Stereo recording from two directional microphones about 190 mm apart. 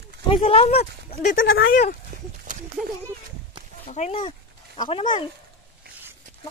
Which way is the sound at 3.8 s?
35° left (ahead or behind).